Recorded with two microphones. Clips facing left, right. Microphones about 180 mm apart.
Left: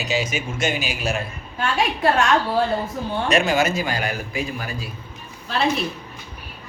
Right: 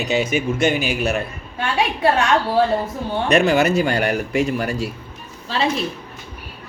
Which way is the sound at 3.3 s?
65° right (ahead or behind).